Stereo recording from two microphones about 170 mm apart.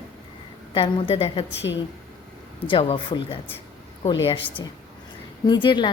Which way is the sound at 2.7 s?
30° left (ahead or behind).